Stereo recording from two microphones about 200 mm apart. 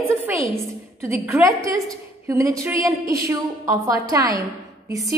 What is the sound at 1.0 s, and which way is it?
A woman's voice, 15° right (ahead or behind).